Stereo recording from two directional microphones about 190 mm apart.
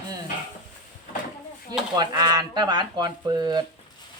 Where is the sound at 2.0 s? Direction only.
20° right (ahead or behind).